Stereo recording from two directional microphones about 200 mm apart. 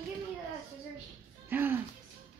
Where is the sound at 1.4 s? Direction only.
10° right (ahead or behind).